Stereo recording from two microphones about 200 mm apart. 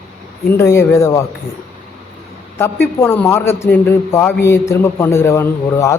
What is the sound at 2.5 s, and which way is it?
A man's voice, 10° left (ahead or behind).